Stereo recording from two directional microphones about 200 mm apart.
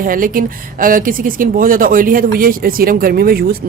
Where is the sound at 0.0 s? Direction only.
45° right (ahead or behind).